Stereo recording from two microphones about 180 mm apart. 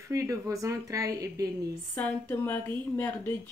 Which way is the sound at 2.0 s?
10° left (ahead or behind).